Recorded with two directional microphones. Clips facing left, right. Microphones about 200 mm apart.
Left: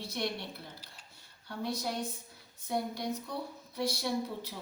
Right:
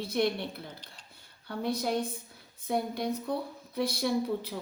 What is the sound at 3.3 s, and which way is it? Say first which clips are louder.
A woman's voice: right 6 dB; 55° right (ahead or behind).